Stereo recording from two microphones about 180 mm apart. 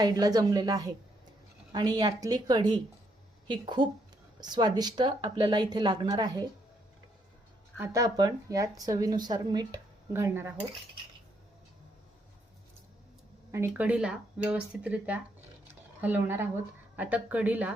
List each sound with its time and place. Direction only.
0.0 s a woman's voice: 20° right (ahead or behind)
7.8 s speech: 20° right (ahead or behind)
13.5 s speech: 10° right (ahead or behind)